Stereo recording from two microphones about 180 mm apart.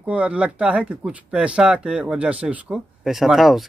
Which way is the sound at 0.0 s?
5° right (ahead or behind).